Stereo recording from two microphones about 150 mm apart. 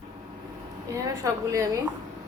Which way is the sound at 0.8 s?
20° right (ahead or behind).